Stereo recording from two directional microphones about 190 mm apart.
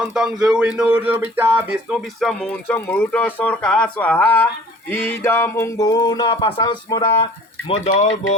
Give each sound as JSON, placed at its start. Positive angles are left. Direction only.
{"t": 0.0, "sound": "speech", "side_deg": -5}
{"t": 2.2, "sound": "speech", "side_deg": 5}
{"t": 4.9, "sound": "a sound", "side_deg": 10}
{"t": 7.7, "sound": "speech", "side_deg": 35}